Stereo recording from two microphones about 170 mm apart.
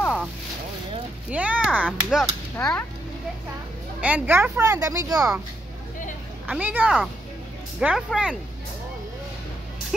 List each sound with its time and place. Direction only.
1.3 s a sound: 5° right (ahead or behind)
1.9 s speech: centre (ahead or behind)
4.0 s speech: 10° right (ahead or behind)
6.4 s speech: 10° right (ahead or behind)